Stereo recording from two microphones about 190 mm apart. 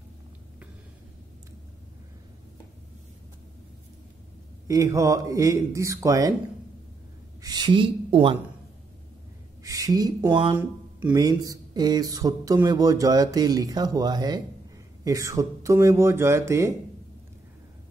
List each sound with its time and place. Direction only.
4.6 s speech: 20° right (ahead or behind)
7.4 s a woman's voice: 20° right (ahead or behind)
9.6 s speech: 20° right (ahead or behind)
10.5 s speech: 10° right (ahead or behind)